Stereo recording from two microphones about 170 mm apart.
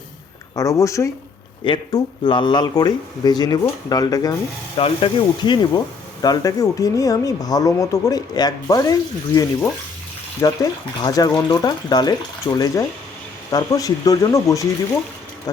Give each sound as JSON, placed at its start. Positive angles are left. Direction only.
{"t": 0.5, "sound": "speech", "side_deg": 20}